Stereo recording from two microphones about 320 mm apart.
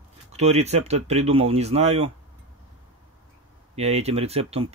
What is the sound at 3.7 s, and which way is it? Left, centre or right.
Speech, centre.